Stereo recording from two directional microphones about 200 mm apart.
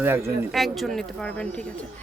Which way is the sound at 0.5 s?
Centre (ahead or behind).